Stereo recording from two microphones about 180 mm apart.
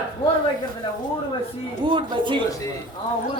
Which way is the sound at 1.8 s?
25° right (ahead or behind).